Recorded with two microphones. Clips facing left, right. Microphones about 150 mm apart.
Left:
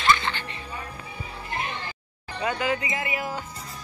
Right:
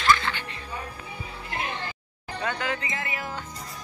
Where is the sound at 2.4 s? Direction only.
10° left (ahead or behind).